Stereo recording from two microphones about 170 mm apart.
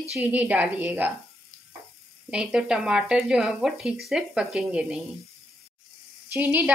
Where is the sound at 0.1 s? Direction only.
10° right (ahead or behind).